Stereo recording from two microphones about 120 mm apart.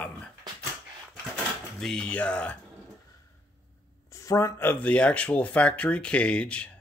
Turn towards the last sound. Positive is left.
turn(degrees=10)  # may be behind; listen again after turning